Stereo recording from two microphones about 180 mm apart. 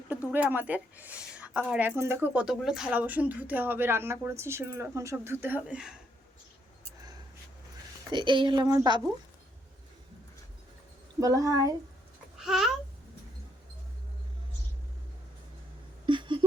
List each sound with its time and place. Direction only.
0.3 s speech: 10° right (ahead or behind)
8.1 s a woman's voice: 25° right (ahead or behind)
11.2 s a woman's voice: 20° right (ahead or behind)
12.4 s babbling: centre (ahead or behind)
16.0 s a sound: 25° right (ahead or behind)